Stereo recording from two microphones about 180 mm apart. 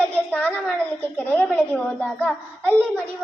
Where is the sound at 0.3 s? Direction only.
10° left (ahead or behind).